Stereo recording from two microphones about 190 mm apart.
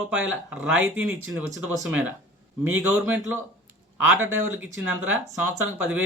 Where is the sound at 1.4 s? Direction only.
15° right (ahead or behind).